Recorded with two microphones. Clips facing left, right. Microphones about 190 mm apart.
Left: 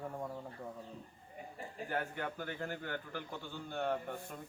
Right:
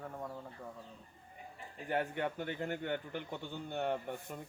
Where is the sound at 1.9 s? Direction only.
20° right (ahead or behind).